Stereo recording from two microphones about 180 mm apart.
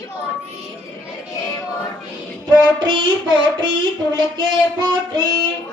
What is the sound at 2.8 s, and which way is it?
Speech, 25° right (ahead or behind).